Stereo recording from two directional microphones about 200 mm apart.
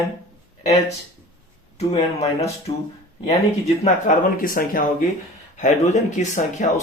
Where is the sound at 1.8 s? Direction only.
30° left (ahead or behind).